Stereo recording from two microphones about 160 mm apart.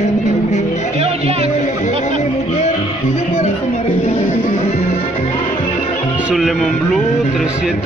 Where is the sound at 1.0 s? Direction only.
40° right (ahead or behind).